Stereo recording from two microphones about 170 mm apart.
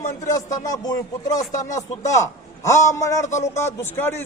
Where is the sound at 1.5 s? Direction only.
45° left (ahead or behind).